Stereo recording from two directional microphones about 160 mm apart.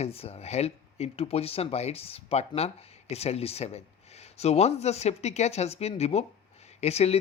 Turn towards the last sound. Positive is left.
turn(degrees=40)  # may be behind; listen again after turning